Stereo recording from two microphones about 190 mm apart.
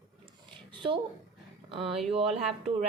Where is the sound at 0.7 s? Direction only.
25° right (ahead or behind).